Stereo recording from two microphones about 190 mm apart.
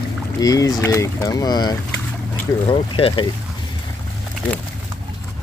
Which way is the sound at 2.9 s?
30° left (ahead or behind).